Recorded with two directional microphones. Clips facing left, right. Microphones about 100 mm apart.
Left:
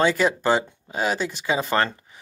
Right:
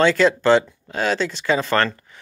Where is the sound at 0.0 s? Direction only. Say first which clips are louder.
Right 4 dB; 10° left (ahead or behind).